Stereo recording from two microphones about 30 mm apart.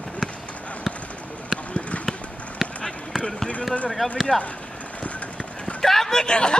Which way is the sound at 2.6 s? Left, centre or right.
Centre.